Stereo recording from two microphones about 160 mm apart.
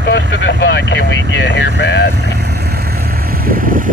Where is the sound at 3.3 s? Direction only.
65° right (ahead or behind).